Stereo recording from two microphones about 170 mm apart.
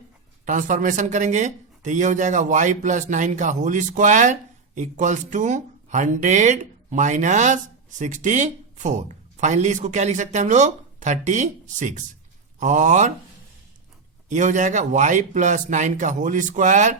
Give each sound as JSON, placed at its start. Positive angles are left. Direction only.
{"t": 0.4, "sound": "speech", "side_deg": -50}
{"t": 14.3, "sound": "speech", "side_deg": -45}